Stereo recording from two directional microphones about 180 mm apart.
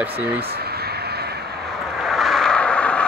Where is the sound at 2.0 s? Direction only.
Centre (ahead or behind).